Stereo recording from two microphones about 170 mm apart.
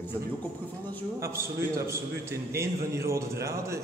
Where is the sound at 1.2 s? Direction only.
15° right (ahead or behind).